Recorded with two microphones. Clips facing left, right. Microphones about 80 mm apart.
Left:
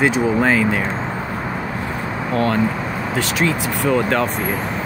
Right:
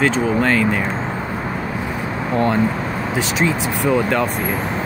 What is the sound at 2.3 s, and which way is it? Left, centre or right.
Speech, centre.